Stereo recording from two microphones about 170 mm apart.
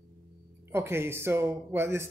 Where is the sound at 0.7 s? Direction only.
15° right (ahead or behind).